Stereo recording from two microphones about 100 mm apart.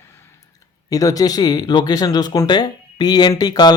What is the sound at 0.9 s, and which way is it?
Speech, 35° left (ahead or behind).